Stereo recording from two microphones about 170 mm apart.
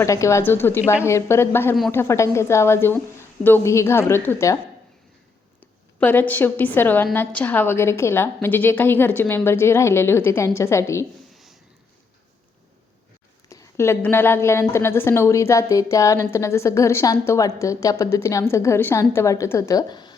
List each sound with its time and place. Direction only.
0.0 s a woman's voice: 15° left (ahead or behind)
6.0 s a woman's voice: 10° left (ahead or behind)
13.5 s a woman's voice: 15° left (ahead or behind)